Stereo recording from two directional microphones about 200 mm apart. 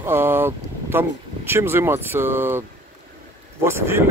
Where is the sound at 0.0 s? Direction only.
10° right (ahead or behind).